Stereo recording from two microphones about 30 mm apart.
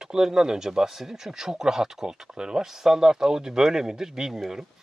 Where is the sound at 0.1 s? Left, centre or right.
Centre.